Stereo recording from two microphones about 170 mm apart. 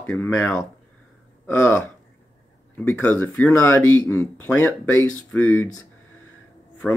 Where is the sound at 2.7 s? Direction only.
10° left (ahead or behind).